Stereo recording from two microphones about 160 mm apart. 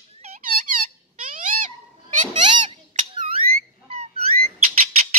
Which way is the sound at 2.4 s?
30° right (ahead or behind).